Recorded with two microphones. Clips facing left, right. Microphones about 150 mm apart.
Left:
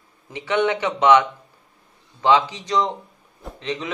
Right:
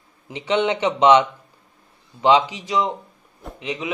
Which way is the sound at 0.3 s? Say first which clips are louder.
Even; 20° right (ahead or behind).